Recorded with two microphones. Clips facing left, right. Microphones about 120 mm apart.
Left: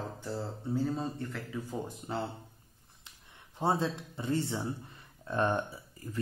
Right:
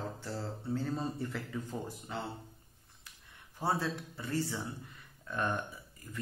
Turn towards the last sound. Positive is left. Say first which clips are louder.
# left 7 dB
turn(degrees=30)  # may be behind; listen again after turning